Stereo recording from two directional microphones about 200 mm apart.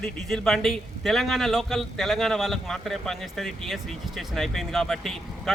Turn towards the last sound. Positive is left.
turn(degrees=0)  # may be behind; listen again after turning